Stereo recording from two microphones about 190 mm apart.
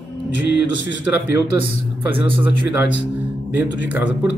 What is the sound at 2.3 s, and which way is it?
Speech, 65° left (ahead or behind).